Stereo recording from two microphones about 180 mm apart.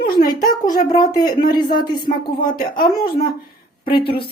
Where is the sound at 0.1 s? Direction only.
55° left (ahead or behind).